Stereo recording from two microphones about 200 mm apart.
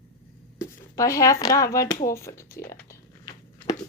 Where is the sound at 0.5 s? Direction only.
15° left (ahead or behind).